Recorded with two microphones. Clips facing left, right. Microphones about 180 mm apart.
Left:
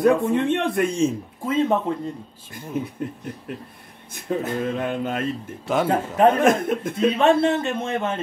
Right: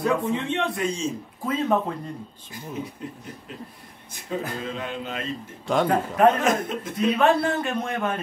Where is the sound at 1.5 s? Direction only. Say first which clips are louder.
Left 3 dB; 25° left (ahead or behind).